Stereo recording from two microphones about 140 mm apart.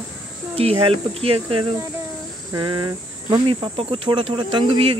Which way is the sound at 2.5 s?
30° right (ahead or behind).